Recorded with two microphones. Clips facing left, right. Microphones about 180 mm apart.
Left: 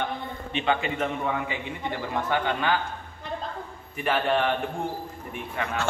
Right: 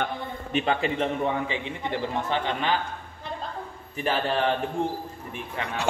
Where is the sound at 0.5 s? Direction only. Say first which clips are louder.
Right 1 dB; 40° right (ahead or behind); by 2.7 s 25° right (ahead or behind).